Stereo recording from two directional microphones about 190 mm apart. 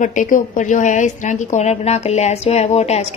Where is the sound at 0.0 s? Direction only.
40° left (ahead or behind).